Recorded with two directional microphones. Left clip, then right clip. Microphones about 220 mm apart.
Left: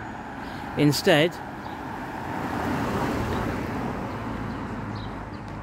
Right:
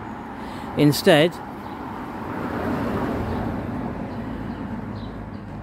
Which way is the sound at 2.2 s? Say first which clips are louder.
Right 2 dB; 30° left (ahead or behind).